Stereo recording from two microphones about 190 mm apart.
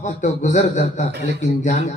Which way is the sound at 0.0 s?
40° left (ahead or behind).